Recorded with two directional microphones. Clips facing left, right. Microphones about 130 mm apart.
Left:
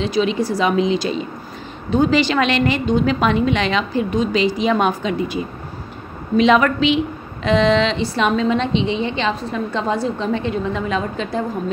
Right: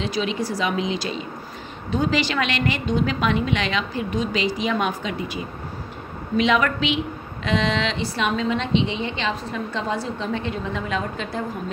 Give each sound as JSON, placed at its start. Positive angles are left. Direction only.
{"t": 0.0, "sound": "a woman's voice", "side_deg": 25}